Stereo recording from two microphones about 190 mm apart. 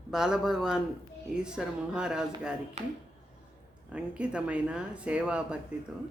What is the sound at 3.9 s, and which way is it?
Speech, 5° right (ahead or behind).